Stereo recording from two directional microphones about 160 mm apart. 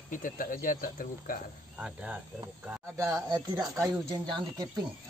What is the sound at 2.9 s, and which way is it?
Speech, 20° right (ahead or behind).